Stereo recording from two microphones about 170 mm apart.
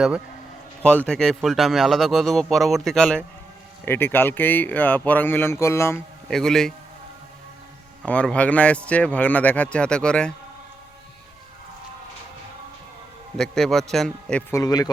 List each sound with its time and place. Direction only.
0.8 s speech: 5° left (ahead or behind)
6.3 s speech: 5° left (ahead or behind)
8.0 s speech: 5° left (ahead or behind)
13.3 s speech: centre (ahead or behind)
14.5 s a man's voice: 20° left (ahead or behind)